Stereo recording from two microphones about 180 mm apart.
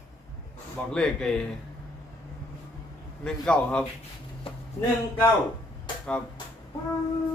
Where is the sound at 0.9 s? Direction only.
5° left (ahead or behind).